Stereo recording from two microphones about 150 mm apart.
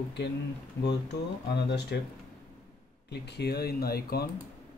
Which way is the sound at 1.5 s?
90° left.